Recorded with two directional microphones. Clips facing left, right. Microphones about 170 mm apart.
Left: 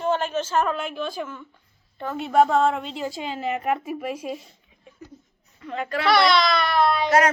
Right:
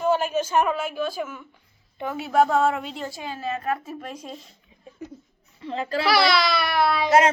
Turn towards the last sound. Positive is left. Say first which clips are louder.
# left 1 dB
turn(degrees=-5)  # may be behind; listen again after turning